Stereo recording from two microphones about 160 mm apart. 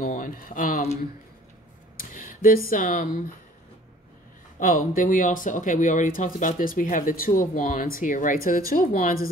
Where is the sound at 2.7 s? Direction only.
60° left (ahead or behind).